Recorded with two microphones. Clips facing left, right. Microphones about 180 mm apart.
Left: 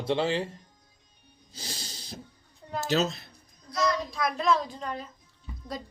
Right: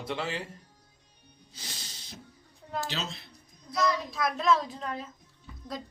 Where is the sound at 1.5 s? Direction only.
30° left (ahead or behind).